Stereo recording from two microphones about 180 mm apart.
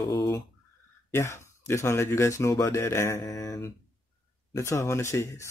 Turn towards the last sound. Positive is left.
turn(degrees=15)  # may be behind; listen again after turning